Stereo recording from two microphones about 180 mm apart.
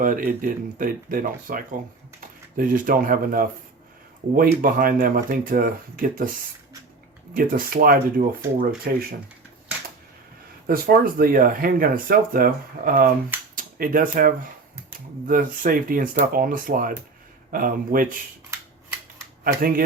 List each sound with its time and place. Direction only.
0.0 s speech: 50° right (ahead or behind)
7.3 s speech: 55° right (ahead or behind)
10.7 s speech: 55° right (ahead or behind)
19.5 s speech: 50° right (ahead or behind)